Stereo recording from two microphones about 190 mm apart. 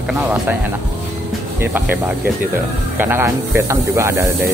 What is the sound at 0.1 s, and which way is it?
Speech, 10° right (ahead or behind).